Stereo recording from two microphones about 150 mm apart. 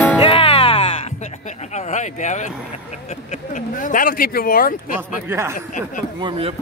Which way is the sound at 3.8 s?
70° left (ahead or behind).